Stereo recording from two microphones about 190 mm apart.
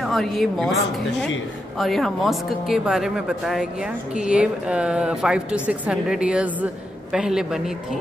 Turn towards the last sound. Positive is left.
turn(degrees=0)  # may be behind; listen again after turning